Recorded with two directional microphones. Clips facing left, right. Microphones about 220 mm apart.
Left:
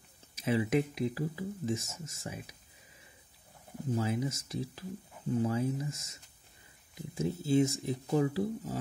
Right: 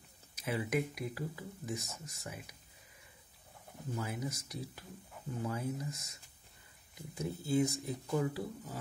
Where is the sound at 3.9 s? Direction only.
25° left (ahead or behind).